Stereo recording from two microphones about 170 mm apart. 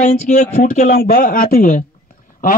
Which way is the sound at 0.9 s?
60° left (ahead or behind).